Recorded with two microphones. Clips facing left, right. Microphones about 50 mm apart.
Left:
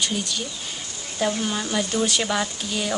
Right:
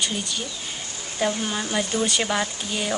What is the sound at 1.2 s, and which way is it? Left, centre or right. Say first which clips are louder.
A woman's voice: left 1 dB; centre.